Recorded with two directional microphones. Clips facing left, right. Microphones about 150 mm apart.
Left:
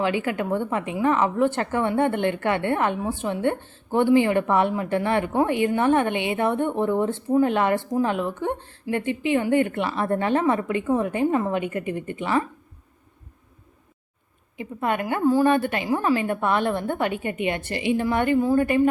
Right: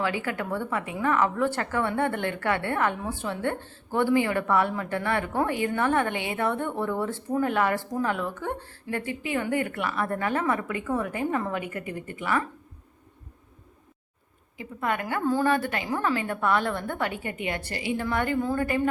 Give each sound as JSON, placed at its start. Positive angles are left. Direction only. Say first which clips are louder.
{"t": 0.0, "sound": "a woman's voice", "louder": "left 5 dB", "side_deg": 20}
{"t": 14.6, "sound": "a woman's voice", "louder": "left 4 dB", "side_deg": 20}